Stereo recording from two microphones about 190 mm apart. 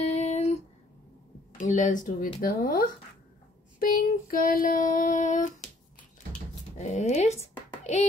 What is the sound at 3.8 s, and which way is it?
Child singing, 50° left (ahead or behind).